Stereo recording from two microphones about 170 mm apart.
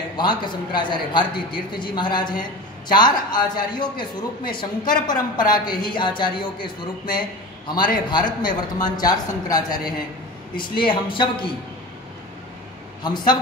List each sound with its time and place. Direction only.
0.2 s a man's voice: 25° left (ahead or behind)
13.0 s a man's voice: 25° left (ahead or behind)